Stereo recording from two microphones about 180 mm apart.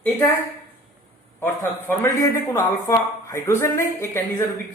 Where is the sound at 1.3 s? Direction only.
15° left (ahead or behind).